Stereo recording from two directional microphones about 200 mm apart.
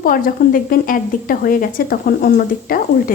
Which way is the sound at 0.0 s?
45° left (ahead or behind).